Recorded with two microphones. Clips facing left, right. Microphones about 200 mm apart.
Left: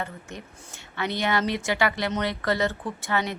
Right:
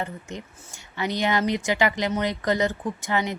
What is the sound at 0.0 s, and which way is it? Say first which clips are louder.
Speech: right 3 dB; 20° right (ahead or behind).